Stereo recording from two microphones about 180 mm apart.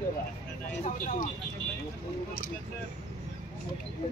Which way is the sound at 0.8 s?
40° left (ahead or behind).